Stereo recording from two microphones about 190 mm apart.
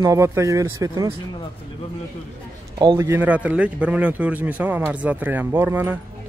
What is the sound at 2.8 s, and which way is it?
A man's voice, 20° right (ahead or behind).